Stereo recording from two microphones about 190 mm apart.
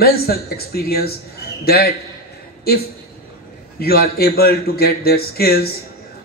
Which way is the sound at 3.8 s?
55° left (ahead or behind).